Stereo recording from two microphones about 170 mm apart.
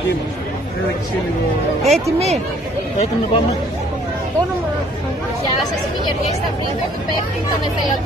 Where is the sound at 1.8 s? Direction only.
40° right (ahead or behind).